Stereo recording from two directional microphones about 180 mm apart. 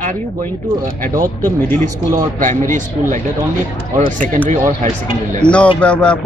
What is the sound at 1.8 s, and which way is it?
Speech, 45° right (ahead or behind).